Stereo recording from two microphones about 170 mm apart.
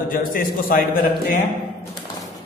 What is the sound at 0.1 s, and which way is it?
Speech, 55° left (ahead or behind).